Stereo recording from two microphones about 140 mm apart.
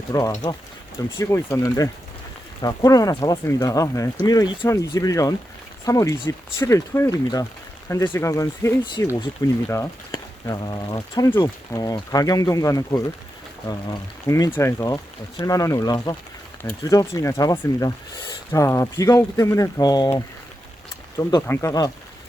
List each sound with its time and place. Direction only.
0.1 s speech: 25° left (ahead or behind)
11.3 s speech: 15° left (ahead or behind)
14.3 s speech: 25° left (ahead or behind)
21.4 s speech: 15° left (ahead or behind)